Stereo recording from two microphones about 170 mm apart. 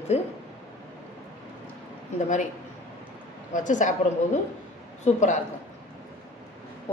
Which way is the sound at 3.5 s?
45° left (ahead or behind).